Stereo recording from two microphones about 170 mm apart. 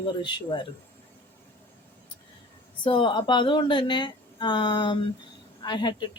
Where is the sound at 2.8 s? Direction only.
30° left (ahead or behind).